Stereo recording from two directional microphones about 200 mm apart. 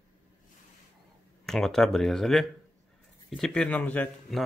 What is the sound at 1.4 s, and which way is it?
A man's voice, centre (ahead or behind).